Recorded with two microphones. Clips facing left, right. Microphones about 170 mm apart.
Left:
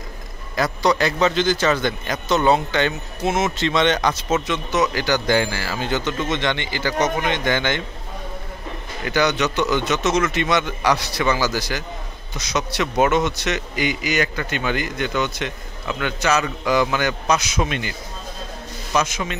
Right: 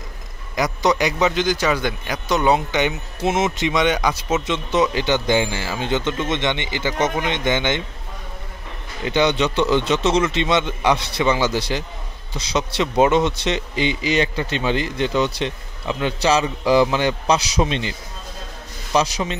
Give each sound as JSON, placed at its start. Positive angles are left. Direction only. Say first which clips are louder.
{"t": 0.6, "sound": "a man's voice", "louder": "even", "side_deg": -15}
{"t": 4.5, "sound": "a man's voice", "louder": "right 2 dB", "side_deg": -30}
{"t": 9.0, "sound": "a man's voice", "louder": "right 2 dB", "side_deg": -25}
{"t": 18.9, "sound": "a man's voice", "louder": "right 2 dB", "side_deg": -35}